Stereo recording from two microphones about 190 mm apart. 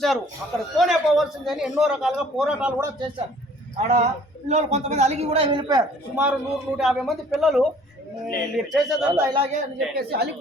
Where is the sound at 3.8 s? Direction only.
35° right (ahead or behind).